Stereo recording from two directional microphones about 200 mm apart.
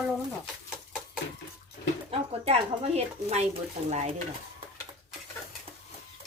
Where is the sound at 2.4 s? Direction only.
30° right (ahead or behind).